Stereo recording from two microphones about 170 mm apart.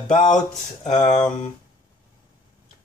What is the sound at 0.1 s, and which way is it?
Speech, 45° left (ahead or behind).